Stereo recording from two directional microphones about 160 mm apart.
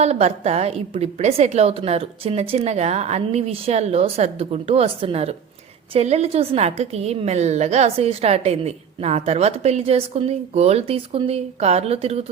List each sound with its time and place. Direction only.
0.0 s a woman's voice: 40° right (ahead or behind)